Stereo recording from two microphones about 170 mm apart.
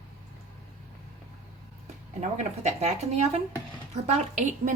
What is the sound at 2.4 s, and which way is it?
A woman's voice, 40° right (ahead or behind).